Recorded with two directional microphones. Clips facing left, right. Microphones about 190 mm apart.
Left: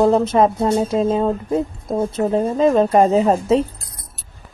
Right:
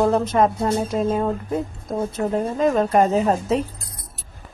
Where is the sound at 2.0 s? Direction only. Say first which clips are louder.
Left 4 dB; 25° left (ahead or behind).